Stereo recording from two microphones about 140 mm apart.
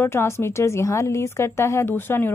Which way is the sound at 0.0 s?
15° left (ahead or behind).